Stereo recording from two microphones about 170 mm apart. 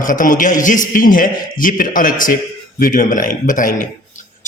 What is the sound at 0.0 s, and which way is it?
A man's voice, 50° left (ahead or behind).